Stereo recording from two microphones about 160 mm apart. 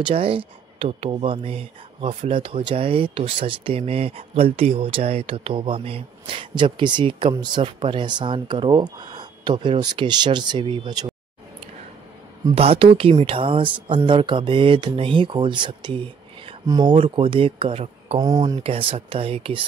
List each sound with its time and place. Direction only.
0.0 s speech: 35° right (ahead or behind)
12.5 s speech: 35° right (ahead or behind)
18.2 s speech: 20° right (ahead or behind)
18.6 s speech: 35° right (ahead or behind)